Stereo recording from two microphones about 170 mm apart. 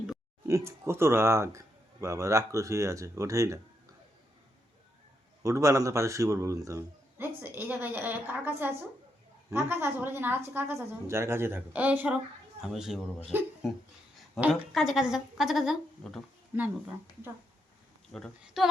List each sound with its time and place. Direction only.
0.4 s a man's voice: 15° right (ahead or behind)
5.4 s a man's voice: 15° right (ahead or behind)
18.1 s a woman's voice: centre (ahead or behind)